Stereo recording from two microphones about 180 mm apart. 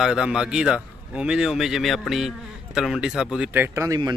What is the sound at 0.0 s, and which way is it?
Speech, 5° right (ahead or behind).